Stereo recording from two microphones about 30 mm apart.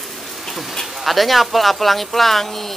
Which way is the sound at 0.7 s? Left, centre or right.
Centre.